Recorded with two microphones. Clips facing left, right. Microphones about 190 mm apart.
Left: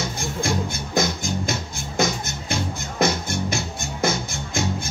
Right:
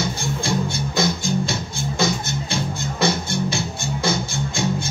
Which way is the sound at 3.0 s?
30° right (ahead or behind).